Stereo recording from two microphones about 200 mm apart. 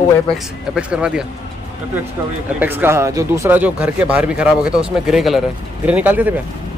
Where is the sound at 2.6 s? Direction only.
10° right (ahead or behind).